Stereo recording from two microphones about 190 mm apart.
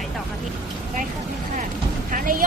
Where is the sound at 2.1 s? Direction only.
45° right (ahead or behind).